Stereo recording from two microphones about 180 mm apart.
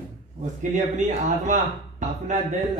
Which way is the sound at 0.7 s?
40° right (ahead or behind).